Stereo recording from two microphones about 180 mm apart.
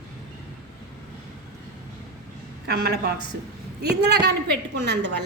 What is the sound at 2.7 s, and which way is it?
A woman's voice, 60° right (ahead or behind).